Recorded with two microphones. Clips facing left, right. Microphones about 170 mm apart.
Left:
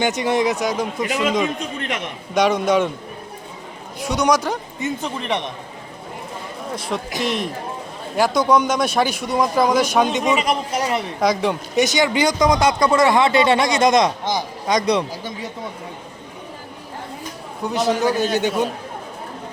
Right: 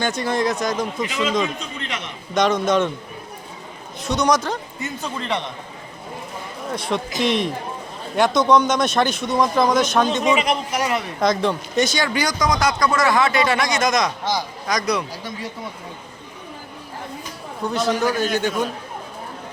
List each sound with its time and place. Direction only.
0.0 s speech: 15° left (ahead or behind)
1.5 s a man's voice: 55° left (ahead or behind)
2.3 s speech: 10° left (ahead or behind)
4.0 s speech: 10° left (ahead or behind)
6.7 s a man's voice: 5° left (ahead or behind)
10.2 s speech: 40° left (ahead or behind)
11.2 s speech: 10° left (ahead or behind); by 15.3 s 30° left (ahead or behind)
17.8 s speech: 20° left (ahead or behind)